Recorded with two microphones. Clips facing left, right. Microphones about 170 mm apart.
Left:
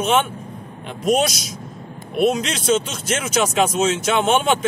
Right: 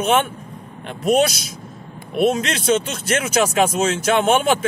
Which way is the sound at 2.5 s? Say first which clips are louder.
Right 1 dB; 55° right (ahead or behind).